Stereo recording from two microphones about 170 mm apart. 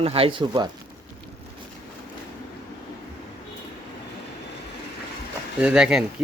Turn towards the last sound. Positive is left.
turn(degrees=-5)  # may be behind; listen again after turning